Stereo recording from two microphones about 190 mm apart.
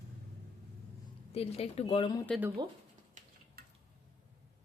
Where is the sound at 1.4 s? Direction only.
30° left (ahead or behind).